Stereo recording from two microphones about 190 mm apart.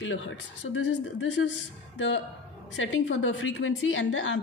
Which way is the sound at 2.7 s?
90° left.